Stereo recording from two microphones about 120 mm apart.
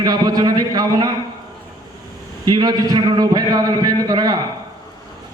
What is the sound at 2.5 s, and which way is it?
A man's voice, 35° right (ahead or behind).